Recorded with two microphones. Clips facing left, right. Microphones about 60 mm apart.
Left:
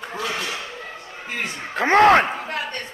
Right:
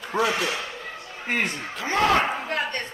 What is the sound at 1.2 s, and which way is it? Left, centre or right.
Speech, right.